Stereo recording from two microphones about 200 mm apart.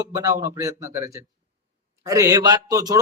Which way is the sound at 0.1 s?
15° right (ahead or behind).